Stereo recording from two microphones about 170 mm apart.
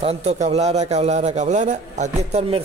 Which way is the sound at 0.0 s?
35° right (ahead or behind).